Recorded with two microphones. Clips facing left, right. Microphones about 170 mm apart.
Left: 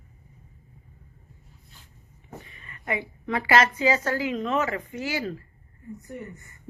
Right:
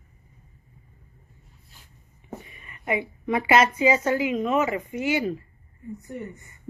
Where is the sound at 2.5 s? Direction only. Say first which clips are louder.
Right 4 dB; 15° right (ahead or behind).